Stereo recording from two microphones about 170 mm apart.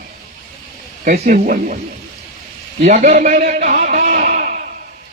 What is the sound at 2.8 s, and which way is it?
Speech, 45° right (ahead or behind).